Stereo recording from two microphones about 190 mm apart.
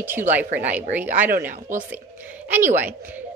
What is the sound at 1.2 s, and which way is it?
Speech, 45° right (ahead or behind).